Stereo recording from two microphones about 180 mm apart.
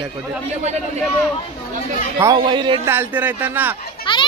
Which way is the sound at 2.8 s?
10° right (ahead or behind).